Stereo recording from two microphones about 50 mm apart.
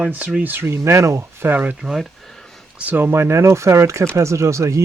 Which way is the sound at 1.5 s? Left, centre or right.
Right.